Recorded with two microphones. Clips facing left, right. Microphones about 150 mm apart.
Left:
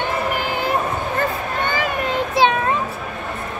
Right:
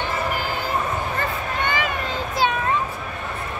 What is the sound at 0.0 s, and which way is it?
Child singing, 60° left (ahead or behind).